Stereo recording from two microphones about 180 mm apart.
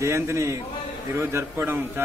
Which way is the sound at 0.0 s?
15° right (ahead or behind).